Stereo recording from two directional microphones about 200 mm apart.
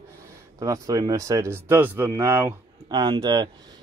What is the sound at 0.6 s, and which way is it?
Speech, 15° right (ahead or behind).